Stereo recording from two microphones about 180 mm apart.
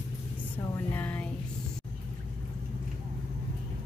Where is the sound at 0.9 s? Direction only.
10° left (ahead or behind).